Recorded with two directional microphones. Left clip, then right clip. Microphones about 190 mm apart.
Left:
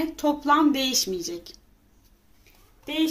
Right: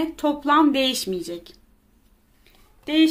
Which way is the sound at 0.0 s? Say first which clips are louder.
Right 2 dB; 15° right (ahead or behind).